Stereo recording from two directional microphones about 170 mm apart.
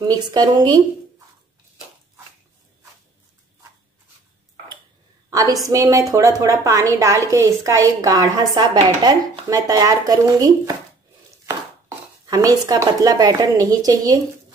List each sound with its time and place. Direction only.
0.0 s a woman's voice: 25° right (ahead or behind)
5.3 s a woman's voice: 20° right (ahead or behind)
12.3 s a woman's voice: 20° right (ahead or behind)